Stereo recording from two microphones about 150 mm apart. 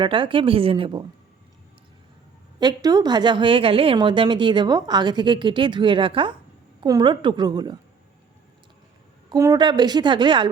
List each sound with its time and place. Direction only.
0.0 s a woman's voice: 35° right (ahead or behind)
2.6 s a woman's voice: 25° right (ahead or behind)
9.3 s a woman's voice: 25° right (ahead or behind)